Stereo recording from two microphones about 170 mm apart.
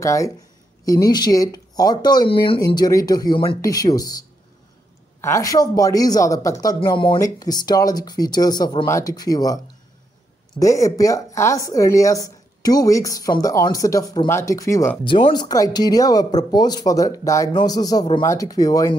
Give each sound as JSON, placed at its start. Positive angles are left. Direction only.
{"t": 0.0, "sound": "speech", "side_deg": 20}
{"t": 10.6, "sound": "speech", "side_deg": 20}
{"t": 15.0, "sound": "speech", "side_deg": 30}